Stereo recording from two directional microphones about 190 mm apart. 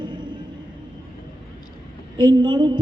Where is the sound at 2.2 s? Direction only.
25° right (ahead or behind).